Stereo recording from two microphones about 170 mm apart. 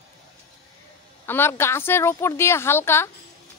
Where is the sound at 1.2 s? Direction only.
15° left (ahead or behind).